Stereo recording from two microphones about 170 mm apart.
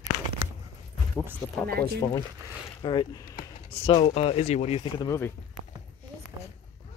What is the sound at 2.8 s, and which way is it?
Speech, 30° left (ahead or behind).